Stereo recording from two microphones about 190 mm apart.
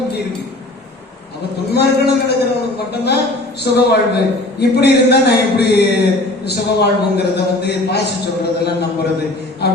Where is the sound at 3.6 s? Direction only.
60° left (ahead or behind).